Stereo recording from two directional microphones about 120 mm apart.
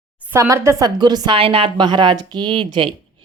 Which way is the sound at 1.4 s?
50° right (ahead or behind).